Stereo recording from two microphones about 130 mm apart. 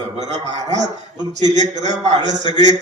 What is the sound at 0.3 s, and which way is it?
A man's voice, 60° right (ahead or behind).